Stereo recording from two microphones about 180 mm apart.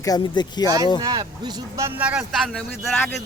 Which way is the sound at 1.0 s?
20° right (ahead or behind).